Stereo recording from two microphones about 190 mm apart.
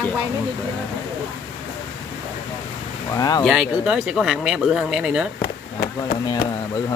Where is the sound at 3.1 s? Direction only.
20° left (ahead or behind).